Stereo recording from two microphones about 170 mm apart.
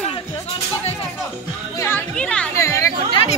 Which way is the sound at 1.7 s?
10° left (ahead or behind).